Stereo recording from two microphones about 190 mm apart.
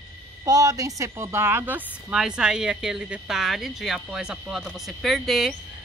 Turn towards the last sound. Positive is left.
turn(degrees=0)  # may be behind; listen again after turning